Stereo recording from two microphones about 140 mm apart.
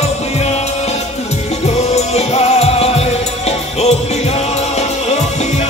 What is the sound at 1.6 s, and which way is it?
Music, 50° left (ahead or behind).